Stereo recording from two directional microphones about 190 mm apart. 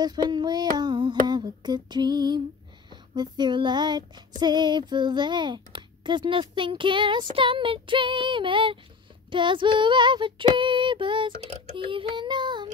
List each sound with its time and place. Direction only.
0.0 s speech: 20° right (ahead or behind)
2.9 s child singing: 25° right (ahead or behind)
4.4 s speech: 25° right (ahead or behind)